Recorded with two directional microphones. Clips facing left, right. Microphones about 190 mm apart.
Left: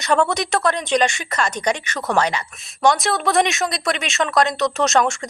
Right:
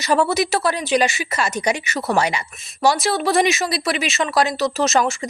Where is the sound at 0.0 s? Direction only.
5° right (ahead or behind).